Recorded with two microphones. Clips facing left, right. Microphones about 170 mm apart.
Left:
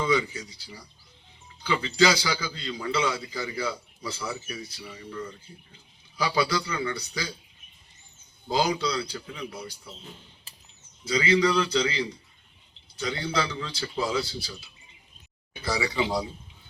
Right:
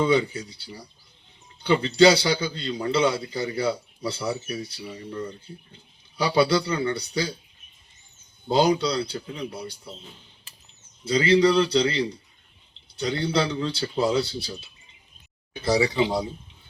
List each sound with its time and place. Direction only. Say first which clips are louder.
0.0 s a man's voice: right 4 dB; 30° right (ahead or behind)
8.4 s a man's voice: right 5 dB; 30° right (ahead or behind)
11.0 s a man's voice: right 4 dB; 30° right (ahead or behind)
15.6 s a man's voice: right 7 dB; 35° right (ahead or behind)